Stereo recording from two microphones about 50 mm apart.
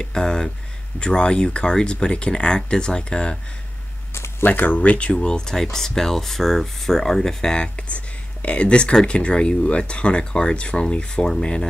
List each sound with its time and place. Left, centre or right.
0.0 s speech: centre
4.1 s a sound: left
4.5 s speech: left; by 11.6 s centre